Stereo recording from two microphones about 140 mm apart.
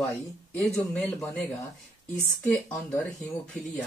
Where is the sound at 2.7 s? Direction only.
5° left (ahead or behind).